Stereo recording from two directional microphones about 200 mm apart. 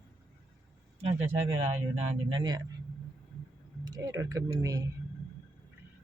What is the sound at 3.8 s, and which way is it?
Speech, 20° right (ahead or behind).